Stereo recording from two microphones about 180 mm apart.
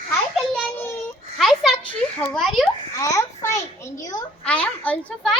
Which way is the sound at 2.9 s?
20° left (ahead or behind).